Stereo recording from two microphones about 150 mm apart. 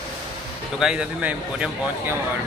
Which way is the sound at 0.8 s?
5° right (ahead or behind).